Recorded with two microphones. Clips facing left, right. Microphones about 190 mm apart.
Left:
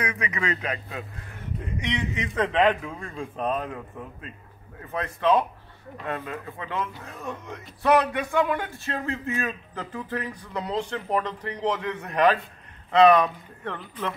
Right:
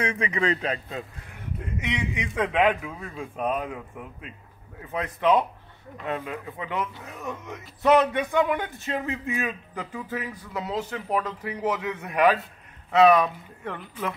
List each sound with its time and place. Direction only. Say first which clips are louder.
0.0 s a man's voice: right 3 dB; 30° right (ahead or behind)
1.8 s a man's voice: left 1 dB; 10° right (ahead or behind)
7.8 s a man's voice: right 2 dB; 20° right (ahead or behind)